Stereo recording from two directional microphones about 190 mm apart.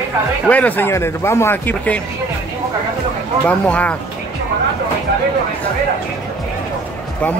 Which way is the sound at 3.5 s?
5° left (ahead or behind).